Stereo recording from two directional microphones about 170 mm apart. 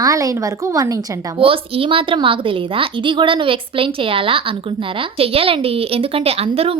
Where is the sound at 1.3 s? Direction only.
30° right (ahead or behind).